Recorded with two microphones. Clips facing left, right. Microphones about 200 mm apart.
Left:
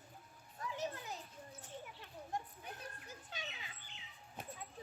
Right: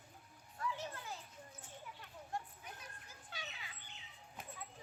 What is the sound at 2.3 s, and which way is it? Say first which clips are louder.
Children playing: left 1 dB; 20° left (ahead or behind).